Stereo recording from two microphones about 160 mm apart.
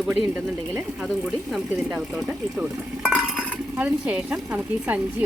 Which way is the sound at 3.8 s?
10° right (ahead or behind).